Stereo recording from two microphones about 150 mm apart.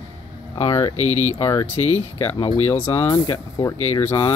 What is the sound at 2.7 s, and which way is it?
Speech, 15° left (ahead or behind).